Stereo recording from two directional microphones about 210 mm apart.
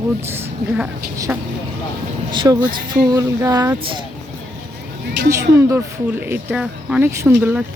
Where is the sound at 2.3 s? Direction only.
20° right (ahead or behind).